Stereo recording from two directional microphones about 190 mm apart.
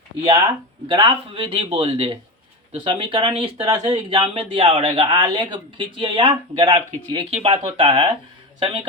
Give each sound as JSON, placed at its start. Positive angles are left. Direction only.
{"t": 0.9, "sound": "speech", "side_deg": -25}